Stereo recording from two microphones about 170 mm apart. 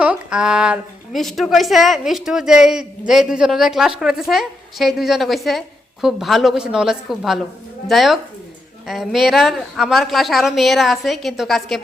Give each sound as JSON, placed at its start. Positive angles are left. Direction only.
{"t": 0.0, "sound": "a woman's voice", "side_deg": -5}